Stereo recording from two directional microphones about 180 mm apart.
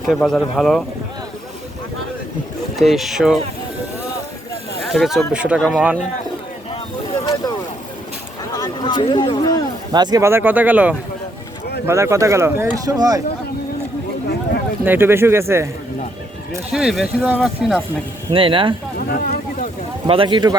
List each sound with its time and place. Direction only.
0.0 s speech: centre (ahead or behind)
2.7 s speech: centre (ahead or behind)
4.8 s speech: centre (ahead or behind)
7.1 s a sound: 25° left (ahead or behind)
8.5 s a sound: 25° left (ahead or behind)
9.9 s speech: 25° right (ahead or behind)
14.8 s speech: 10° right (ahead or behind)
16.7 s speech: 5° right (ahead or behind)
18.3 s a man's voice: 30° right (ahead or behind)
18.9 s a sound: 55° left (ahead or behind)
20.1 s a man's voice: 30° right (ahead or behind)